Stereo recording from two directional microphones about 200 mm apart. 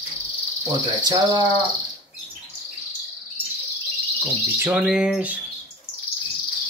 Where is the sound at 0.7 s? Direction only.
20° right (ahead or behind).